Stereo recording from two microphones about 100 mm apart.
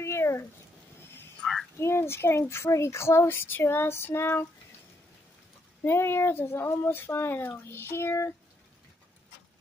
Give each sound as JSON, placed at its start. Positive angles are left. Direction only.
{"t": 0.0, "sound": "a sound", "side_deg": 25}
{"t": 1.4, "sound": "frog", "side_deg": 5}
{"t": 1.8, "sound": "speech", "side_deg": 25}
{"t": 5.9, "sound": "speech", "side_deg": 25}